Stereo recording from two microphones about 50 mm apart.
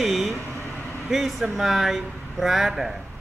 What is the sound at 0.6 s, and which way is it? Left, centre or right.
Vehicle, left.